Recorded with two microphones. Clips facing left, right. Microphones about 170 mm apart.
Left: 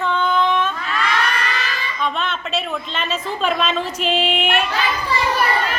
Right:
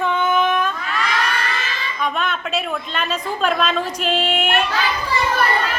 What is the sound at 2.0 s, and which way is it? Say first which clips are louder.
A woman's voice: right 1 dB; 5° right (ahead or behind).